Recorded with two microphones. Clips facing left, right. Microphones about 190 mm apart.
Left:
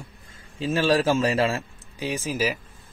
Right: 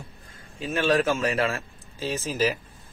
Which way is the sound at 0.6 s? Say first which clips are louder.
Left 2 dB; 30° left (ahead or behind).